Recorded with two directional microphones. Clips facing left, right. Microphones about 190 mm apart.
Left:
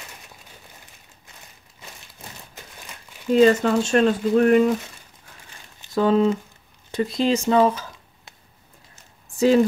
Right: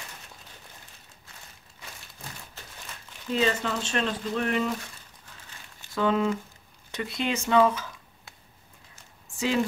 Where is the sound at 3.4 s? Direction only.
45° left (ahead or behind).